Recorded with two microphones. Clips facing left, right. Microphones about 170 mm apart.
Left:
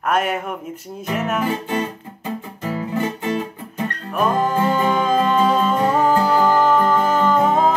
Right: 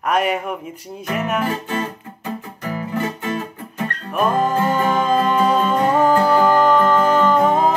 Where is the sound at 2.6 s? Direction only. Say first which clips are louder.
Left 1 dB; 20° left (ahead or behind).